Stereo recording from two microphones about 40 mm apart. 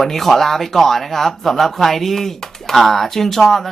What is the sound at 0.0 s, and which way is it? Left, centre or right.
Speech, centre.